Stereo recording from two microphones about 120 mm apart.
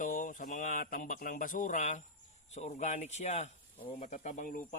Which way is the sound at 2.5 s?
70° left (ahead or behind).